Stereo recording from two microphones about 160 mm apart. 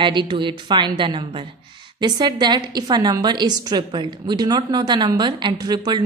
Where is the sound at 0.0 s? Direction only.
30° right (ahead or behind).